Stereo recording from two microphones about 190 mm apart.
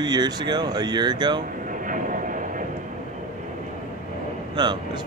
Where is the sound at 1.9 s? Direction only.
45° right (ahead or behind).